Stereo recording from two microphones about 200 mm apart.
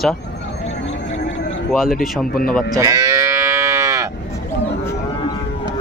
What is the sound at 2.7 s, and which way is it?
Livestock, 15° right (ahead or behind).